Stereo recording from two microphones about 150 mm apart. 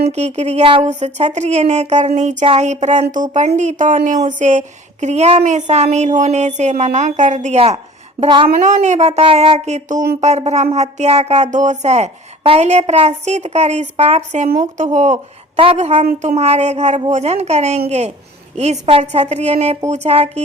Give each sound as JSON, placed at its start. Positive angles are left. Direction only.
{"t": 0.0, "sound": "a woman's voice", "side_deg": -45}
{"t": 15.5, "sound": "speech", "side_deg": -40}